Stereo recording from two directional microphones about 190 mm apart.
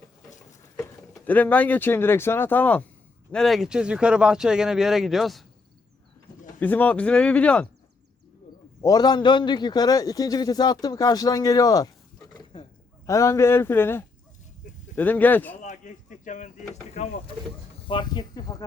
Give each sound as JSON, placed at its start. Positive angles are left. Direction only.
{"t": 0.8, "sound": "speech", "side_deg": 10}
{"t": 6.6, "sound": "speech", "side_deg": 10}
{"t": 8.8, "sound": "a man's voice", "side_deg": 20}
{"t": 12.5, "sound": "a sound", "side_deg": 25}
{"t": 13.1, "sound": "speech", "side_deg": 15}
{"t": 15.6, "sound": "a sound", "side_deg": 40}
{"t": 17.8, "sound": "a man's voice", "side_deg": 25}